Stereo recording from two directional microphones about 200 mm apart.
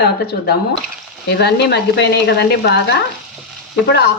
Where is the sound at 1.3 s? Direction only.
55° left (ahead or behind).